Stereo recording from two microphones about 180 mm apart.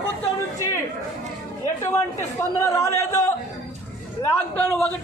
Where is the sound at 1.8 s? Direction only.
15° left (ahead or behind).